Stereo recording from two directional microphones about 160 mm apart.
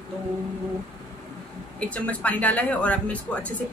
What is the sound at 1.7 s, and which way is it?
Speech, 10° left (ahead or behind).